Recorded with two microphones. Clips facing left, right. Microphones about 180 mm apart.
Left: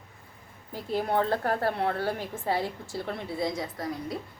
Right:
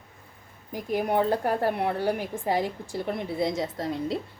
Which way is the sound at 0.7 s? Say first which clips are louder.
Right 2 dB; 15° right (ahead or behind).